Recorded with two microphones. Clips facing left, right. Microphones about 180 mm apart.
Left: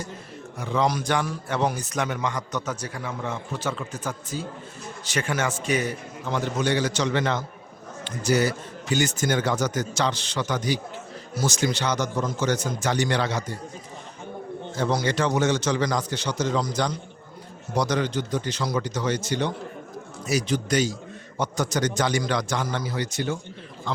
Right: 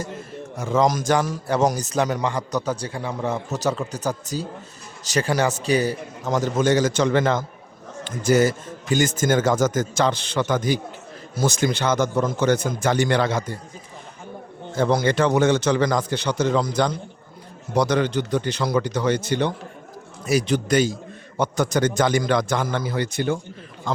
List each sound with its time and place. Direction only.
0.6 s a man's voice: 45° right (ahead or behind)
14.8 s a man's voice: 55° right (ahead or behind)